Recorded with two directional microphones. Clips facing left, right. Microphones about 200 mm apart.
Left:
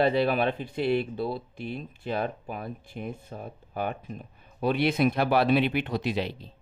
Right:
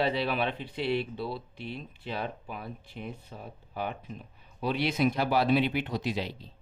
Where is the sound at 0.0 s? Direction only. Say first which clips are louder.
Left 5 dB; 50° left (ahead or behind).